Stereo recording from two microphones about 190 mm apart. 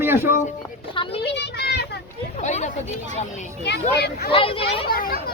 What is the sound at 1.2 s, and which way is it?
Children playing, 60° left (ahead or behind).